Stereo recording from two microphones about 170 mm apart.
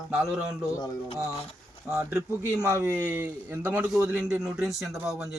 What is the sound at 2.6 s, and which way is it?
A man's voice, 15° right (ahead or behind).